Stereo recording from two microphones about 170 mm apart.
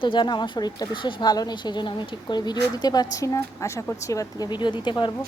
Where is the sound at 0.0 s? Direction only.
30° left (ahead or behind).